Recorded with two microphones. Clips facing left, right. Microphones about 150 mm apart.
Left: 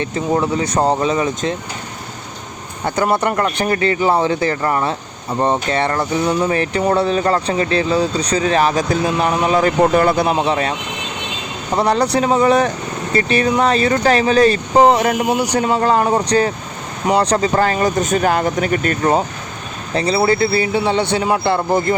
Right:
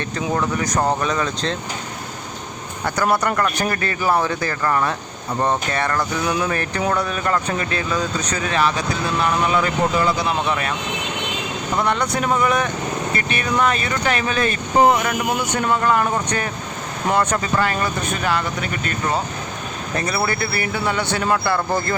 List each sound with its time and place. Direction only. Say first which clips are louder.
0.0 s speech: left 4 dB; 20° left (ahead or behind)
2.8 s speech: left 3 dB; 20° left (ahead or behind); by 9.7 s 40° left (ahead or behind)
9.9 s speech: left 6 dB; 55° left (ahead or behind)
10.4 s speech: left 5 dB; 30° left (ahead or behind)
11.8 s speech: left 6 dB; 35° left (ahead or behind)
20.0 s speech: left 8 dB; 25° left (ahead or behind)